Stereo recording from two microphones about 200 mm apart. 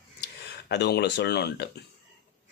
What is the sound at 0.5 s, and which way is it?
Speech, 55° left (ahead or behind).